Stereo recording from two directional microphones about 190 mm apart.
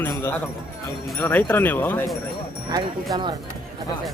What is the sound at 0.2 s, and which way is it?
Speech, 10° left (ahead or behind).